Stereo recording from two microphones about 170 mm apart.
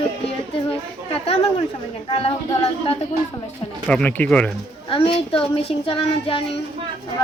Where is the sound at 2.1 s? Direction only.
30° left (ahead or behind).